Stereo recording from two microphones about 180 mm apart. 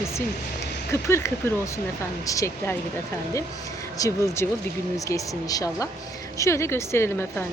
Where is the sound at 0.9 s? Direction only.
15° left (ahead or behind).